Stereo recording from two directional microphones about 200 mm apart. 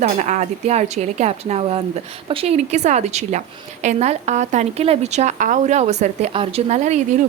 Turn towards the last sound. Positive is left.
turn(degrees=-35)  # may be behind; listen again after turning